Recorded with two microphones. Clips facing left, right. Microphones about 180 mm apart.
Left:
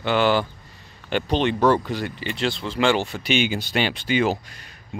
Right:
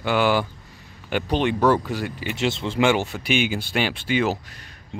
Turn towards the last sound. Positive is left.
turn(degrees=0)  # may be behind; listen again after turning